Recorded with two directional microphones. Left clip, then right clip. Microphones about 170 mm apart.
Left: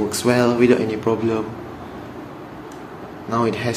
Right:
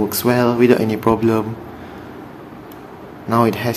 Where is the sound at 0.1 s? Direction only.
20° right (ahead or behind); by 1.4 s 35° right (ahead or behind).